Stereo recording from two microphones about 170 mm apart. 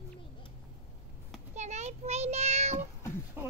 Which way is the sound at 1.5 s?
40° right (ahead or behind).